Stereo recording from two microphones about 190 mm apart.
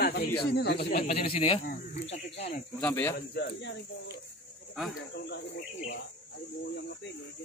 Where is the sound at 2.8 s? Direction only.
10° left (ahead or behind).